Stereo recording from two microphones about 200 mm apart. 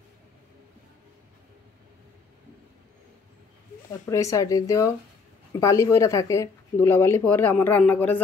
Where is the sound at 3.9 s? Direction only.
15° left (ahead or behind).